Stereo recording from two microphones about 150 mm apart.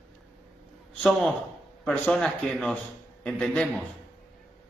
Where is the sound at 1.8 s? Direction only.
5° left (ahead or behind).